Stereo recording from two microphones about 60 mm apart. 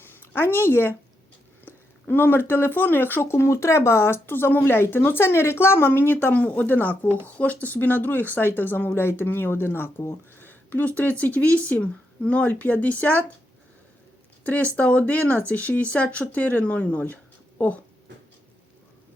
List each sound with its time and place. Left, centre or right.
0.0 s a woman's voice: left
14.4 s speech: left